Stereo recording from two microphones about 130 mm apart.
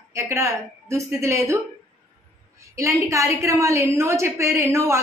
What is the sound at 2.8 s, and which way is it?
A woman's voice, 25° right (ahead or behind).